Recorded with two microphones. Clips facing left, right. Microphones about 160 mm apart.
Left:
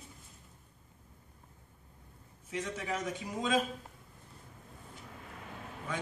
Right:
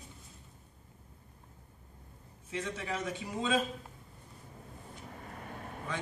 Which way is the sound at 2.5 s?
5° left (ahead or behind).